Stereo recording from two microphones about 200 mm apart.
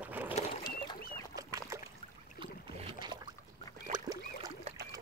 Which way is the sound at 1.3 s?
15° right (ahead or behind).